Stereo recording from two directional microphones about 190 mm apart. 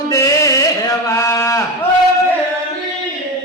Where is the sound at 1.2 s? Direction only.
15° left (ahead or behind).